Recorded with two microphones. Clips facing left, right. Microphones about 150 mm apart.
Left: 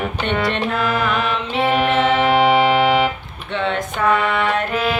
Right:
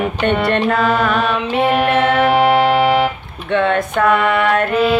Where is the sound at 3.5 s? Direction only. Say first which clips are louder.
Right 6 dB; 60° right (ahead or behind).